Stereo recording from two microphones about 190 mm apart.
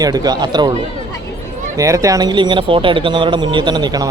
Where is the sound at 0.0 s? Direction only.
20° right (ahead or behind).